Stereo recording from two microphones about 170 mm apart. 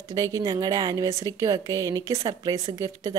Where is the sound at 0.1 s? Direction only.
20° right (ahead or behind).